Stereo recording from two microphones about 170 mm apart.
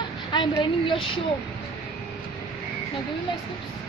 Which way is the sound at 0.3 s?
25° left (ahead or behind).